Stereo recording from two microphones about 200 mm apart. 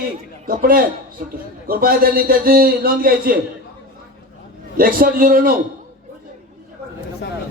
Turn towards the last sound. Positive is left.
turn(degrees=-45)  # may be behind; listen again after turning